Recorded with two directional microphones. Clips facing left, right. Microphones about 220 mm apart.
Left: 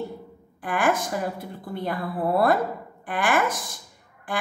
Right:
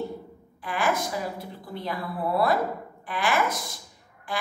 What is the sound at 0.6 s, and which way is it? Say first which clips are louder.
A woman's voice: left 3 dB; 50° left (ahead or behind).